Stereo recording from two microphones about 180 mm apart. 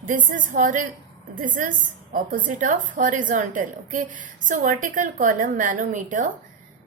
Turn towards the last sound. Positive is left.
turn(degrees=-45)  # may be behind; listen again after turning